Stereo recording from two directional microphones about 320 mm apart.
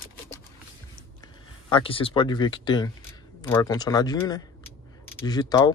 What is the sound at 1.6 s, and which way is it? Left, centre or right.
Speech, centre.